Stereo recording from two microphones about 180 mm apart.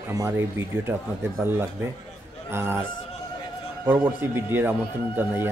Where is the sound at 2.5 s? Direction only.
15° right (ahead or behind).